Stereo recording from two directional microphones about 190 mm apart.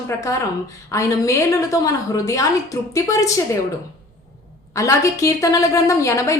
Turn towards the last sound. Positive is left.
turn(degrees=15)  # may be behind; listen again after turning